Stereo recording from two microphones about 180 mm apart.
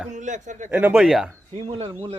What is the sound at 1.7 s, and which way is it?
Speech, 30° right (ahead or behind).